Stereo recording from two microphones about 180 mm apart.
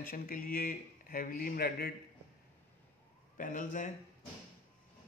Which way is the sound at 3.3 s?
45° left (ahead or behind).